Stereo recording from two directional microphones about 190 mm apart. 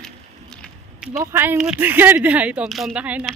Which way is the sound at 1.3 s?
10° right (ahead or behind).